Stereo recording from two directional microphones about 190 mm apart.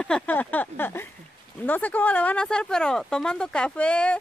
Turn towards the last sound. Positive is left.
turn(degrees=5)  # may be behind; listen again after turning